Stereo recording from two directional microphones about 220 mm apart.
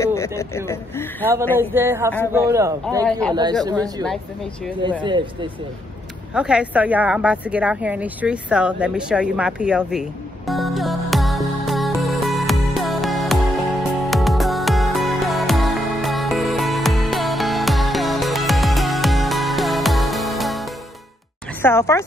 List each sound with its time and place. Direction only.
0.0 s a sound: 15° left (ahead or behind)
1.3 s a man's voice: 10° right (ahead or behind)
3.1 s a man's voice: 5° left (ahead or behind)
5.0 s speech: 20° right (ahead or behind)
6.3 s a sound: 5° right (ahead or behind)
21.5 s speech: 10° left (ahead or behind)